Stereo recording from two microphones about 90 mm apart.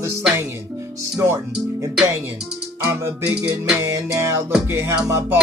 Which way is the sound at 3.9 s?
35° right (ahead or behind).